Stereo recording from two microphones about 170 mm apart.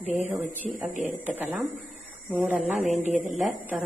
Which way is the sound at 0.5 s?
50° right (ahead or behind).